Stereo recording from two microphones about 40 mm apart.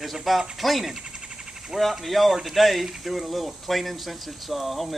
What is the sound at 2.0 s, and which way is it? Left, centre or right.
Speech, centre.